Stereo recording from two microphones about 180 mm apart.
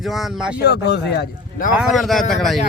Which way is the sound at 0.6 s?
65° left (ahead or behind).